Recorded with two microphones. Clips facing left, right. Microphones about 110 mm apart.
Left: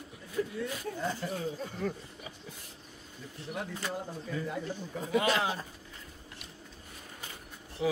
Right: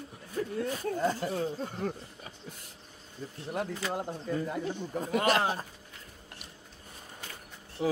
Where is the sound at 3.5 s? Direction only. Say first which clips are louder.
Right 4 dB; 50° right (ahead or behind).